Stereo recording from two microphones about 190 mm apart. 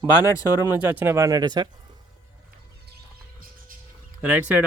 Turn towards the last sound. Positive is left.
turn(degrees=-10)  # may be behind; listen again after turning